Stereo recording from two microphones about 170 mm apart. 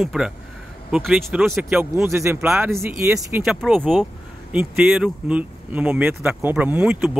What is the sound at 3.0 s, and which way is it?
Speech, 5° right (ahead or behind).